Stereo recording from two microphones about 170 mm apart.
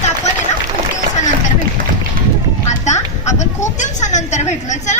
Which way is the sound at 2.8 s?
45° left (ahead or behind).